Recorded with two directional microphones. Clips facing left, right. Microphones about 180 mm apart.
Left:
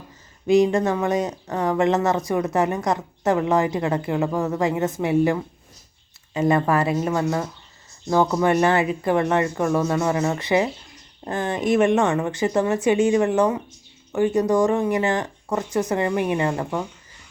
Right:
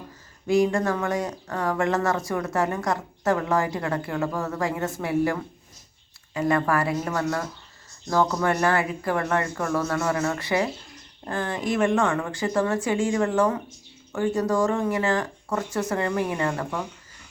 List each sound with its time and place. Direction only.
0.4 s speech: 20° left (ahead or behind)